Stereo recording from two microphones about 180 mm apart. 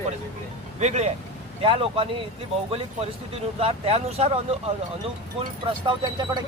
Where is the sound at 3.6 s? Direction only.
35° right (ahead or behind).